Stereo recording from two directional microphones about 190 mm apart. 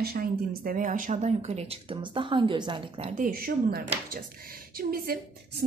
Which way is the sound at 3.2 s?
50° right (ahead or behind).